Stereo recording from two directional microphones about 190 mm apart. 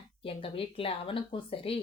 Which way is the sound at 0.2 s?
30° left (ahead or behind).